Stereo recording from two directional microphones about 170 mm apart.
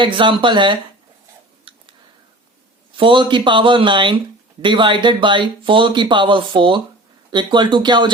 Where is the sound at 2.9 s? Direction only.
30° right (ahead or behind).